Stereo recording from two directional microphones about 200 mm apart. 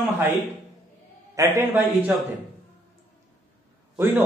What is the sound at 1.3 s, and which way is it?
Speech, 15° right (ahead or behind).